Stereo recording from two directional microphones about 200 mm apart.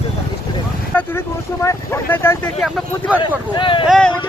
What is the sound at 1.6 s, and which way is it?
Speech, 10° left (ahead or behind).